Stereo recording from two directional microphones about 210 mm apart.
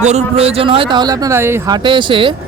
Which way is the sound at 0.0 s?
30° right (ahead or behind).